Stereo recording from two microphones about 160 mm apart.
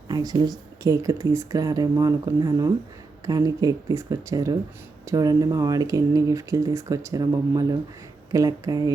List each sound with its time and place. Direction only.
0.1 s speech: 25° right (ahead or behind)